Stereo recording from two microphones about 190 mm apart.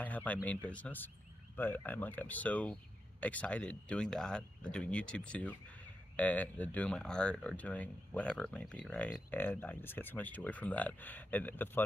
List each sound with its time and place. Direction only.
0.0 s speech: 10° left (ahead or behind)